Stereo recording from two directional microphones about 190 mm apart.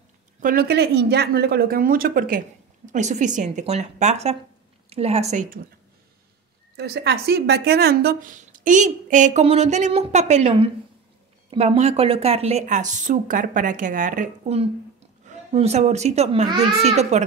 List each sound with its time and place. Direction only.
0.4 s a woman's voice: 50° right (ahead or behind)
6.8 s a woman's voice: 60° right (ahead or behind); by 14.6 s 45° right (ahead or behind)
15.2 s a woman's voice: 35° right (ahead or behind)